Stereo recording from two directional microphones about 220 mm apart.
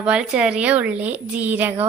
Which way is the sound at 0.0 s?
5° right (ahead or behind).